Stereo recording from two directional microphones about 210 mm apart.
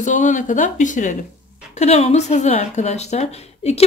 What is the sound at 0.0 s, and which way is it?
Speech, 35° left (ahead or behind).